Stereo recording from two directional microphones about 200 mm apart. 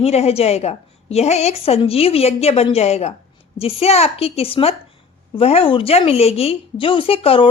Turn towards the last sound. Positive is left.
turn(degrees=30)  # may be behind; listen again after turning